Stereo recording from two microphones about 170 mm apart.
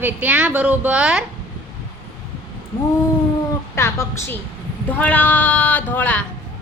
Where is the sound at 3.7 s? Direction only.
15° left (ahead or behind).